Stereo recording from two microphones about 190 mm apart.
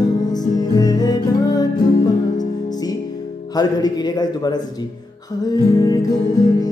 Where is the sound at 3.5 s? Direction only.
20° left (ahead or behind).